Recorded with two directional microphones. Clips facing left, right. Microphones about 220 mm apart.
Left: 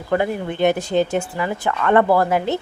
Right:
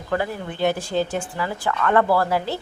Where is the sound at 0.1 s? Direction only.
20° left (ahead or behind).